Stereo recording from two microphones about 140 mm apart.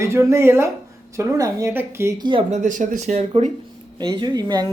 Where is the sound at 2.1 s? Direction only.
35° right (ahead or behind).